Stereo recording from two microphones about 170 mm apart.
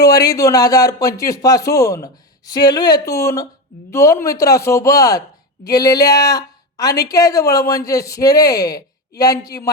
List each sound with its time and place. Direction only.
0.0 s a woman's voice: 20° left (ahead or behind)